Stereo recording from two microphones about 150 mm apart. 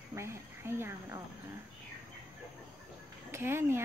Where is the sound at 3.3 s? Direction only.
15° right (ahead or behind).